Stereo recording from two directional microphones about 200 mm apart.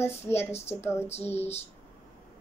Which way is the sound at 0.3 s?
30° left (ahead or behind).